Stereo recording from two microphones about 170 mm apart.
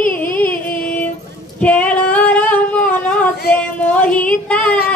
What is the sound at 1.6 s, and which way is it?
Female singing, 10° left (ahead or behind).